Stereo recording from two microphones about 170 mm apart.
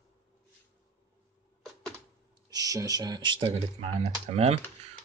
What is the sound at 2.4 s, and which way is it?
Speech, 20° right (ahead or behind).